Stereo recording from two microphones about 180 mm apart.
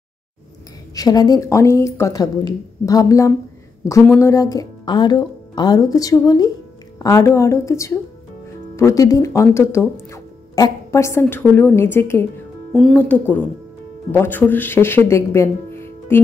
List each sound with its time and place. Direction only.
0.9 s a woman's voice: 20° left (ahead or behind)